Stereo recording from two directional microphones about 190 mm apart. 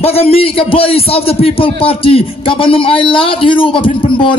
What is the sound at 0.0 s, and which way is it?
A man's voice, 30° left (ahead or behind).